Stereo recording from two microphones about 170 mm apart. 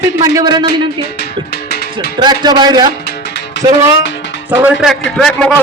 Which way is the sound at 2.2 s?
25° right (ahead or behind).